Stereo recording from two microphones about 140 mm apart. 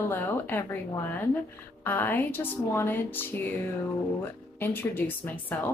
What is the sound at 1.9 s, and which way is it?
Speech, 15° left (ahead or behind).